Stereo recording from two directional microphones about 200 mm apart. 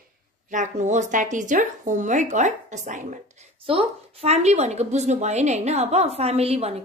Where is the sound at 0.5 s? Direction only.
35° right (ahead or behind).